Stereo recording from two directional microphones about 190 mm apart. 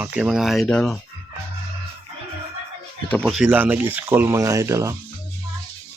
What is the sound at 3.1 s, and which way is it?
Speech, 5° left (ahead or behind).